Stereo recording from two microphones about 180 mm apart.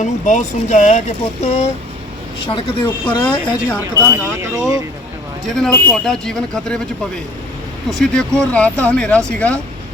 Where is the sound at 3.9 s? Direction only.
15° right (ahead or behind).